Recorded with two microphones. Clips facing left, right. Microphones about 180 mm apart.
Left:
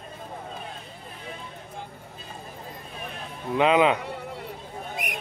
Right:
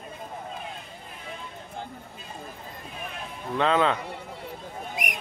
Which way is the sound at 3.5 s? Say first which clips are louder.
Left 3 dB; 15° left (ahead or behind).